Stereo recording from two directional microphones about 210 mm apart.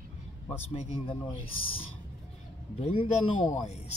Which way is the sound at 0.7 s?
30° left (ahead or behind).